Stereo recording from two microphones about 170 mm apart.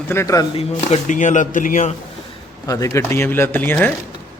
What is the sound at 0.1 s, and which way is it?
Speech, 15° left (ahead or behind).